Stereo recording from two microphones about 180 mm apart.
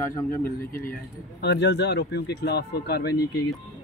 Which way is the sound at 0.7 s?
50° left (ahead or behind).